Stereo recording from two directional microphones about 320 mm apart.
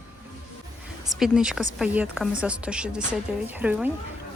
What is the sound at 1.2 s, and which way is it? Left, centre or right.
Speech, centre.